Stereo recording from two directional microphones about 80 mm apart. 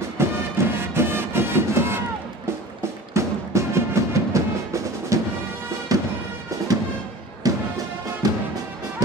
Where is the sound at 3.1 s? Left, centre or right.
Right.